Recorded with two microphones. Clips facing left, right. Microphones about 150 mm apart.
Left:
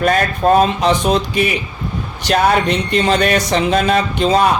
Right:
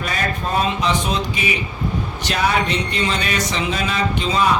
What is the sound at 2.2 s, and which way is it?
Speech, 55° left (ahead or behind).